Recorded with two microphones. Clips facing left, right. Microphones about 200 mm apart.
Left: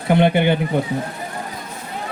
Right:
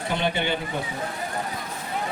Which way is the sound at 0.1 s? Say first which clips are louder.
Left 11 dB; 55° left (ahead or behind).